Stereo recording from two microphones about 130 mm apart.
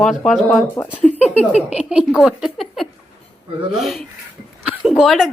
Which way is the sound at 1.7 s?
10° right (ahead or behind).